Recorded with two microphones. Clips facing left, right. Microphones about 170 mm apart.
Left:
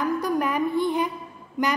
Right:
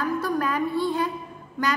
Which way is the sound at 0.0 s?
15° left (ahead or behind).